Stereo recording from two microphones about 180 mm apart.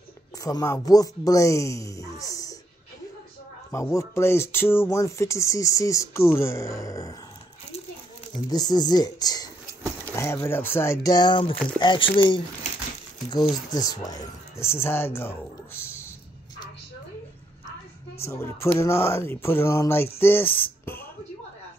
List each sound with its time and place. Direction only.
0.4 s speech: 20° left (ahead or behind)
2.1 s music: 20° left (ahead or behind)
3.7 s speech: 15° left (ahead or behind)
8.5 s speech: 20° left (ahead or behind)
13.3 s speech: 20° left (ahead or behind)
18.2 s speech: 15° left (ahead or behind)